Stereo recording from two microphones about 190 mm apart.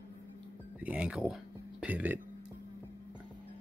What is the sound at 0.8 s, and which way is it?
Speech, 5° right (ahead or behind).